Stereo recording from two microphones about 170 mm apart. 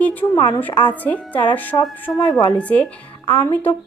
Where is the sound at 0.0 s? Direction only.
10° left (ahead or behind).